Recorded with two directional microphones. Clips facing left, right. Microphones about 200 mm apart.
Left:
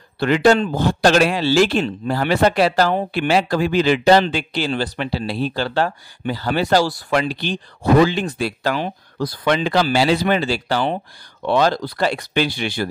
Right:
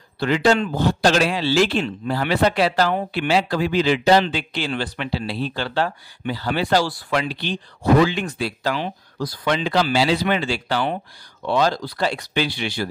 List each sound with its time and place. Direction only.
0.2 s speech: 55° left (ahead or behind)
8.0 s speech: 35° left (ahead or behind)
8.4 s speech: 50° left (ahead or behind); by 11.0 s 35° left (ahead or behind)
11.4 s speech: 60° left (ahead or behind)